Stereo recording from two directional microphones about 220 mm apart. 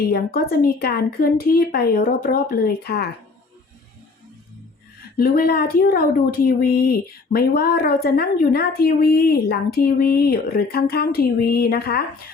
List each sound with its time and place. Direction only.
0.1 s a woman's voice: 45° left (ahead or behind)
5.1 s a woman's voice: 45° left (ahead or behind)